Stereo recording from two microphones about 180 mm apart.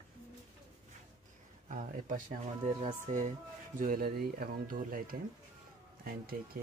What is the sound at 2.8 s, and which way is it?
Speech, 35° right (ahead or behind).